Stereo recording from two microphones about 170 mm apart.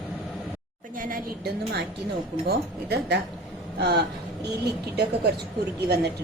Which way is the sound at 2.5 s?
70° right (ahead or behind).